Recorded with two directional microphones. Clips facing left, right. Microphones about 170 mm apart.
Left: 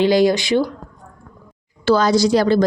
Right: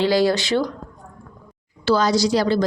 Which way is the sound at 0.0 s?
20° left (ahead or behind).